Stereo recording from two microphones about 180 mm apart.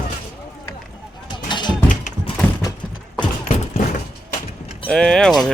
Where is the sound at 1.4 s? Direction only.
25° left (ahead or behind).